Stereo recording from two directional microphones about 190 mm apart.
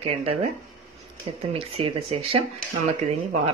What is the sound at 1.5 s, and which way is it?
Speech, 30° right (ahead or behind).